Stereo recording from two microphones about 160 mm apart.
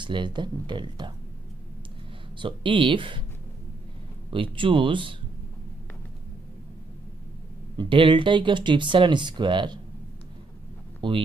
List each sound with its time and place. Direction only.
0.0 s speech: 30° right (ahead or behind)
2.3 s speech: 30° right (ahead or behind)
4.3 s speech: 35° right (ahead or behind)
7.7 s speech: 30° right (ahead or behind)
11.0 s speech: 30° right (ahead or behind)